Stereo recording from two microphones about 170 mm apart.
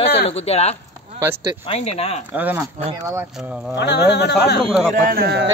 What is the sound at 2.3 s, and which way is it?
Speech, 10° right (ahead or behind).